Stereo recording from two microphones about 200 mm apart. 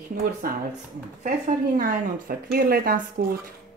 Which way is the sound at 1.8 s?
45° right (ahead or behind).